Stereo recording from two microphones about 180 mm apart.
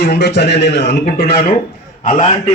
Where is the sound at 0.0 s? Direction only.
65° left (ahead or behind).